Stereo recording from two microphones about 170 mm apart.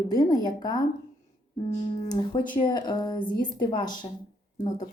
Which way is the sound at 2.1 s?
30° left (ahead or behind).